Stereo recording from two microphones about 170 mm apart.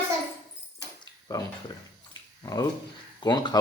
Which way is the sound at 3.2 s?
25° left (ahead or behind).